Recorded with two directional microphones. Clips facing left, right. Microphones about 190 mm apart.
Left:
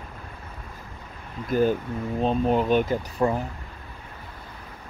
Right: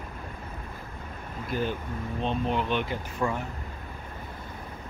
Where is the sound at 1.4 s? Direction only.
45° left (ahead or behind).